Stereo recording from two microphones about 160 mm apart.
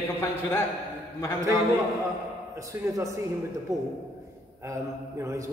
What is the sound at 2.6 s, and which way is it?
Speech, 20° right (ahead or behind).